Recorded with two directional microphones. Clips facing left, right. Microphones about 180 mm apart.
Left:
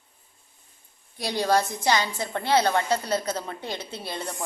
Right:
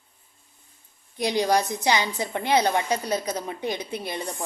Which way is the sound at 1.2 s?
15° right (ahead or behind).